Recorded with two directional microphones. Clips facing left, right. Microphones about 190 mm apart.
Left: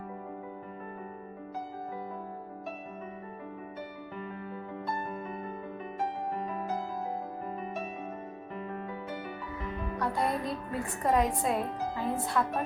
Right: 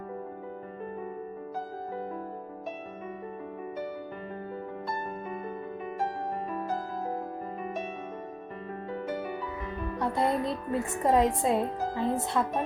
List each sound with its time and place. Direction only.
10.0 s a woman's voice: 25° right (ahead or behind)